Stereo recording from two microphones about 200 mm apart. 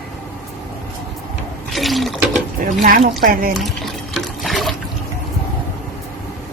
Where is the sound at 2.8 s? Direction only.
45° right (ahead or behind).